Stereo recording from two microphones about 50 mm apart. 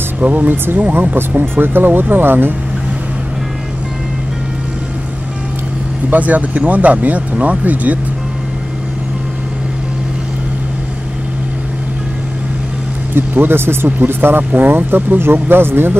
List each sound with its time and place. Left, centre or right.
0.2 s speech: right
6.0 s speech: right
13.1 s speech: right